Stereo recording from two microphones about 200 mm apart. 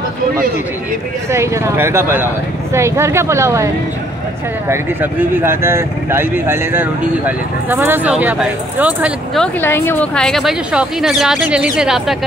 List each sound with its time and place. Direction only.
1.3 s speech: 15° right (ahead or behind)